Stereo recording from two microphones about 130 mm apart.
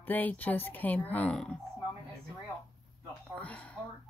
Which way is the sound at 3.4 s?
10° left (ahead or behind).